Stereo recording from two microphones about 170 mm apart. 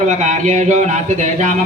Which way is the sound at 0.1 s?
45° right (ahead or behind).